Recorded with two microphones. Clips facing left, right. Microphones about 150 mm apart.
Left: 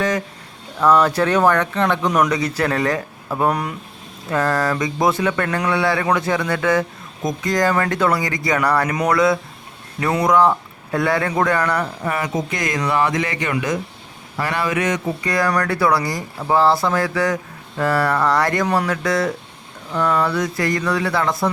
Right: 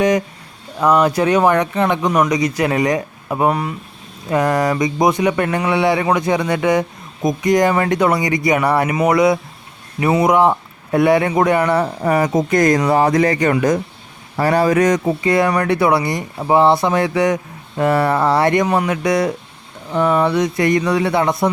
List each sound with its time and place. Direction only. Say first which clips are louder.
0.8 s speech: right 1 dB; 15° right (ahead or behind)
4.3 s speech: right 3 dB; 20° right (ahead or behind)
10.0 s speech: right 5 dB; 10° right (ahead or behind)
10.2 s speech: right 2 dB; 25° right (ahead or behind)
12.0 s speech: right 7 dB; 35° right (ahead or behind)
15.2 s speech: right 4 dB; 25° right (ahead or behind)